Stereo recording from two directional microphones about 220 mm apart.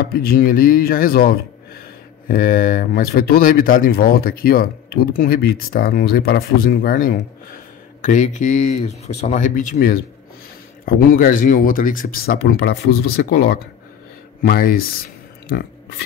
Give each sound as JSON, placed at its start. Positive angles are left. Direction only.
{"t": 0.1, "sound": "speech", "side_deg": 40}